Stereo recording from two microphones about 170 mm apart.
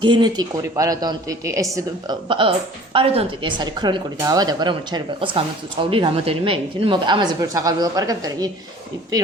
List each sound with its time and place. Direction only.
0.0 s speech: 25° right (ahead or behind)